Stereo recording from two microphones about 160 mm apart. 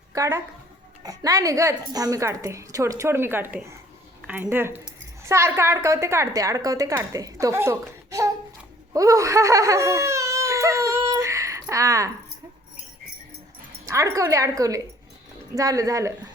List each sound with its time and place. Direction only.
0.1 s a woman's voice: 20° right (ahead or behind)
8.9 s a sound: 20° right (ahead or behind)
11.6 s speech: 20° right (ahead or behind)
13.8 s a woman's voice: 20° right (ahead or behind)